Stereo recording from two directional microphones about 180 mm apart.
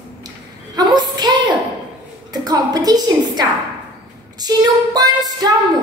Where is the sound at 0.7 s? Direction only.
25° right (ahead or behind).